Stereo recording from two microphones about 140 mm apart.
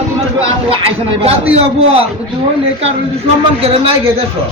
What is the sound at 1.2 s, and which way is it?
Speech, 45° right (ahead or behind).